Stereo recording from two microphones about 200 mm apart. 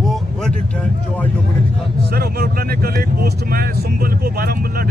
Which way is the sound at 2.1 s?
50° right (ahead or behind).